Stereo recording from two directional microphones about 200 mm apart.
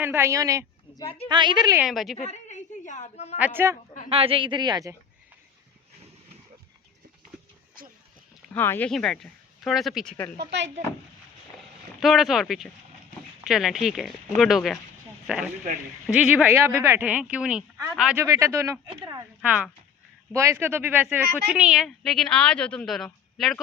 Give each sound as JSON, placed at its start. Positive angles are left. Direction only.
{"t": 0.0, "sound": "speech", "side_deg": -10}
{"t": 0.9, "sound": "speech", "side_deg": 30}
{"t": 1.3, "sound": "a man's voice", "side_deg": -20}
{"t": 1.8, "sound": "a woman's voice", "side_deg": 0}
{"t": 2.1, "sound": "a sound", "side_deg": 35}
{"t": 3.3, "sound": "speech", "side_deg": -10}
{"t": 4.1, "sound": "a man's voice", "side_deg": -25}
{"t": 8.5, "sound": "a woman's voice", "side_deg": 10}
{"t": 11.9, "sound": "a woman's voice", "side_deg": 0}
{"t": 16.0, "sound": "a woman's voice", "side_deg": -5}
{"t": 18.2, "sound": "speech", "side_deg": -15}
{"t": 19.4, "sound": "a woman's voice", "side_deg": -5}